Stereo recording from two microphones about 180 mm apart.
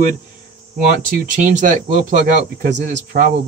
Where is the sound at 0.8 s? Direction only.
50° right (ahead or behind).